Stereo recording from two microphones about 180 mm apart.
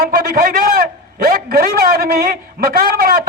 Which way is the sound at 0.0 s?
50° right (ahead or behind).